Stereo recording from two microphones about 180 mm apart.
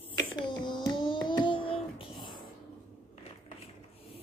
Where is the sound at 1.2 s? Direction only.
25° left (ahead or behind).